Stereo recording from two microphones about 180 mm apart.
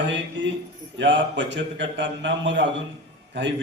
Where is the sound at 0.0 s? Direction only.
90° right.